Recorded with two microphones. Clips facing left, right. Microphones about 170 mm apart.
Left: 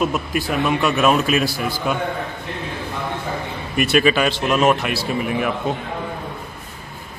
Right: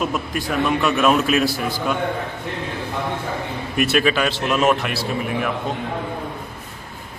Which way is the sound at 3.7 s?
Centre (ahead or behind).